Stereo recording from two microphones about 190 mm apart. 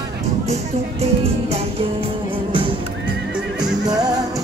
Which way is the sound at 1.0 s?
30° right (ahead or behind).